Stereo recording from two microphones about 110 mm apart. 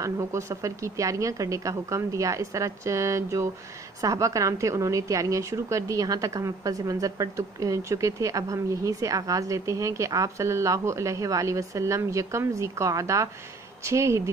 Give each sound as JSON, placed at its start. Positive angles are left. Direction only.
{"t": 0.0, "sound": "a woman's voice", "side_deg": -30}